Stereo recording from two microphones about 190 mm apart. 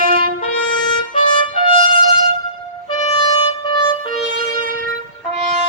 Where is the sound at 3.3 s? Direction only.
20° left (ahead or behind).